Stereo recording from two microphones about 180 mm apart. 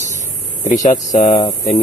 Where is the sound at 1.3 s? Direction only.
30° left (ahead or behind).